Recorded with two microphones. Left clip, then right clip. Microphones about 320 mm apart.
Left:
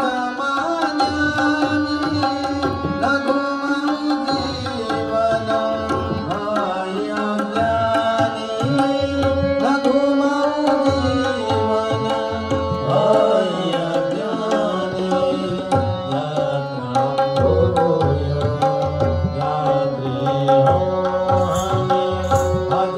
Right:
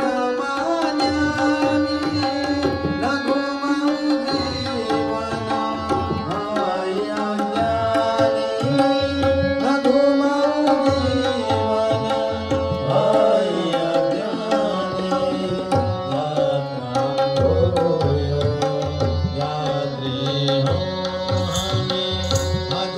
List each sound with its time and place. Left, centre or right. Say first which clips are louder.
13.0 s music: left 1 dB; left